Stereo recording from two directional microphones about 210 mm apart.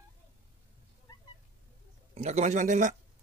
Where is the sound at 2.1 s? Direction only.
35° right (ahead or behind).